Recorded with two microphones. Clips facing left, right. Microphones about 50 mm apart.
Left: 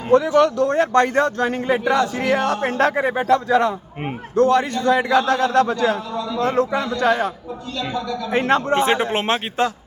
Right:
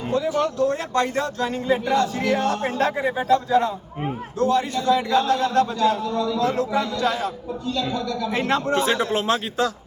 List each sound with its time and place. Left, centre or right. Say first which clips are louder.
0.1 s a man's voice: left 8 dB; left
2.6 s a man's voice: left 4 dB; left
4.4 s a man's voice: left 5 dB; left
6.4 s speech: left 6 dB; left
8.3 s speech: left 5 dB; left